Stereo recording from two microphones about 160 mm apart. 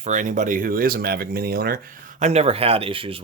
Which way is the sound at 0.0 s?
50° right (ahead or behind).